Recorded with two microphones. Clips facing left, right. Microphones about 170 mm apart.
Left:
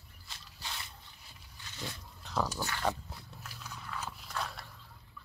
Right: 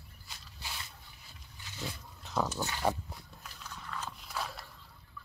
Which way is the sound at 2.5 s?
15° right (ahead or behind).